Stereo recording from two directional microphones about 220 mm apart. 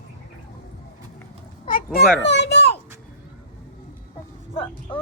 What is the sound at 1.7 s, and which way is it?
Speech, 40° left (ahead or behind).